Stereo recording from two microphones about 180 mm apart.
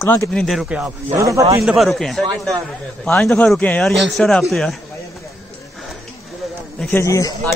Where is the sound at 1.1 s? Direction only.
15° right (ahead or behind).